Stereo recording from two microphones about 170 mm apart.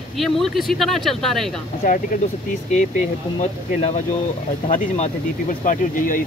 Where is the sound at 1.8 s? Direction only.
55° left (ahead or behind).